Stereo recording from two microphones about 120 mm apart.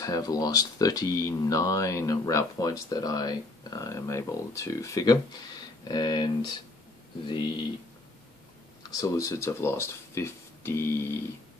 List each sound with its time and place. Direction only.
0.0 s speech: 30° left (ahead or behind)
8.9 s speech: 30° left (ahead or behind)